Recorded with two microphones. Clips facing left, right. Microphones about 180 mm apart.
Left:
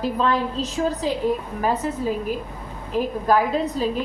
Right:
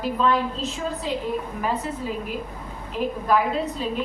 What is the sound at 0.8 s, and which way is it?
Speech, 55° left (ahead or behind).